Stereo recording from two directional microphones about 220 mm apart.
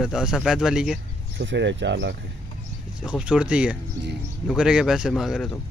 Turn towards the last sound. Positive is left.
turn(degrees=0)  # may be behind; listen again after turning